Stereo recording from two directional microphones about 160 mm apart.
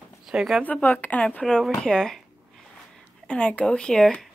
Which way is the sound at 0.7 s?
10° left (ahead or behind).